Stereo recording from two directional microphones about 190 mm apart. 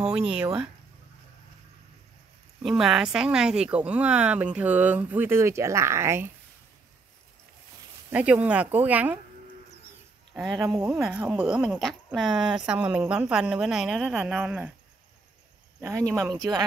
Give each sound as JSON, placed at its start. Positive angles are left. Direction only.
{"t": 2.6, "sound": "speech", "side_deg": 0}
{"t": 8.1, "sound": "speech", "side_deg": -5}
{"t": 10.3, "sound": "a woman's voice", "side_deg": 0}
{"t": 15.8, "sound": "speech", "side_deg": -15}